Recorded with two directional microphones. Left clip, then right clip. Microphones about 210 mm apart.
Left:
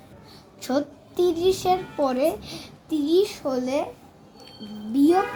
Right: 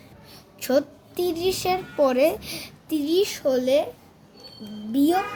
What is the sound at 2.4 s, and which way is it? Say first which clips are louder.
Speech: right 3 dB; 90° right.